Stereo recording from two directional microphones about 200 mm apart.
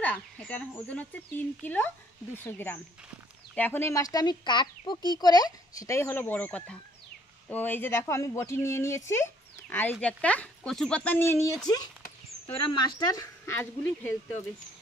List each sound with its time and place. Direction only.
0.0 s speech: 5° left (ahead or behind)